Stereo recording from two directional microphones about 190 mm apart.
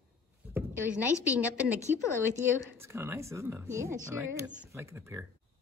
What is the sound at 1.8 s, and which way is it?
Speech, 15° left (ahead or behind).